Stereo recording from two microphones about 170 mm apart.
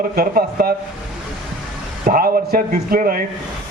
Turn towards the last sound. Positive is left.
turn(degrees=-60)  # may be behind; listen again after turning